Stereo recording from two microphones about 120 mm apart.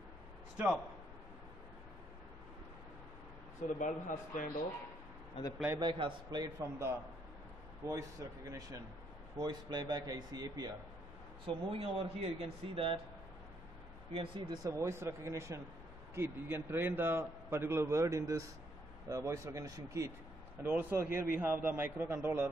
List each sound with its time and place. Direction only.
3.6 s a man's voice: 90° left
5.4 s a man's voice: 45° left (ahead or behind)
5.8 s speech: 45° right (ahead or behind)
6.6 s a man's voice: 20° right (ahead or behind)
11.4 s speech: 50° right (ahead or behind)
14.1 s speech: 45° right (ahead or behind)
14.6 s a man's voice: 20° right (ahead or behind)